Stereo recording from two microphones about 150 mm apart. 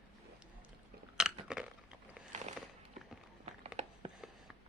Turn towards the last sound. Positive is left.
turn(degrees=-45)  # may be behind; listen again after turning